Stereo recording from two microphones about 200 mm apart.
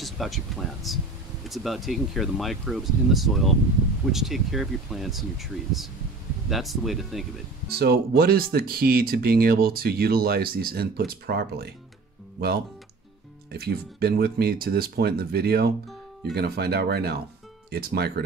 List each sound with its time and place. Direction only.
0.0 s speech: centre (ahead or behind)
7.6 s speech: 50° right (ahead or behind)
13.5 s speech: 50° right (ahead or behind)